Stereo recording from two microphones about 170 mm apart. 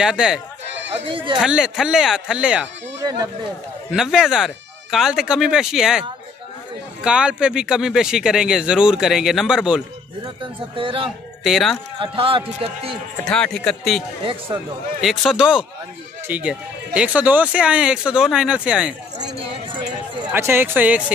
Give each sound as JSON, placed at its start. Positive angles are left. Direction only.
{"t": 0.0, "sound": "speech", "side_deg": -5}
{"t": 1.0, "sound": "speech", "side_deg": -30}
{"t": 1.4, "sound": "speech", "side_deg": -5}
{"t": 3.0, "sound": "speech", "side_deg": -20}
{"t": 3.9, "sound": "speech", "side_deg": -5}
{"t": 10.2, "sound": "speech", "side_deg": -30}
{"t": 11.4, "sound": "speech", "side_deg": 0}
{"t": 12.0, "sound": "a man's voice", "side_deg": -30}
{"t": 12.9, "sound": "speech", "side_deg": 5}
{"t": 14.2, "sound": "a man's voice", "side_deg": -30}
{"t": 15.0, "sound": "speech", "side_deg": 0}
{"t": 20.2, "sound": "speech", "side_deg": -15}